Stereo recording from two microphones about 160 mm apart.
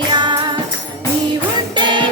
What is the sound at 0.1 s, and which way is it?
Music, 30° right (ahead or behind).